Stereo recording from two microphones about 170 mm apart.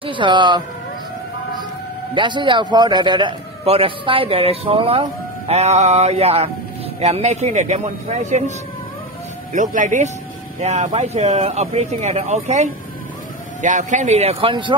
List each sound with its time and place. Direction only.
0.0 s a man's voice: 30° right (ahead or behind)
2.1 s a man's voice: 30° right (ahead or behind)